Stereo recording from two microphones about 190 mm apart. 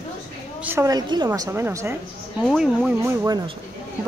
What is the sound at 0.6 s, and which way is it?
A woman's voice, 10° right (ahead or behind).